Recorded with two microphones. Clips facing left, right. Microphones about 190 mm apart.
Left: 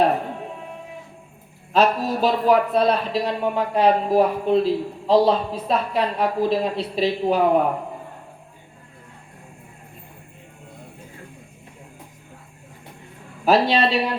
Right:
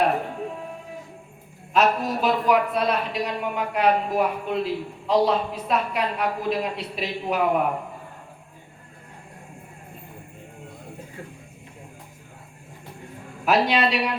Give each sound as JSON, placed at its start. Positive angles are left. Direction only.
{"t": 1.7, "sound": "speech", "side_deg": 30}
{"t": 13.4, "sound": "speech", "side_deg": 30}